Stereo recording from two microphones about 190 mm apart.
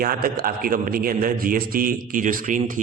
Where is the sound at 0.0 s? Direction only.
50° right (ahead or behind).